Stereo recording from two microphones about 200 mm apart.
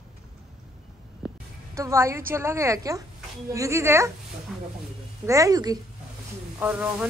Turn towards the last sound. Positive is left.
turn(degrees=-5)  # may be behind; listen again after turning